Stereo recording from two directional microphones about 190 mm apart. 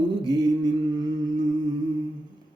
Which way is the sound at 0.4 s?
20° right (ahead or behind).